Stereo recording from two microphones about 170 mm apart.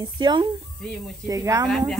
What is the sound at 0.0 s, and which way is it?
Speech, 25° right (ahead or behind).